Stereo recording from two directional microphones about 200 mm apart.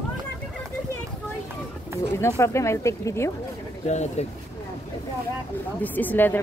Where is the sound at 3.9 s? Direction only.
35° left (ahead or behind).